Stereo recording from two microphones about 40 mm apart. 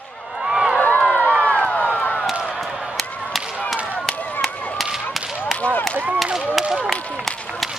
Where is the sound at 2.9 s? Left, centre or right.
Centre.